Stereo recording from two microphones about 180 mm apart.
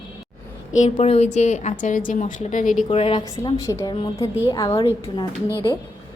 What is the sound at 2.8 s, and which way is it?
Speech, 30° left (ahead or behind).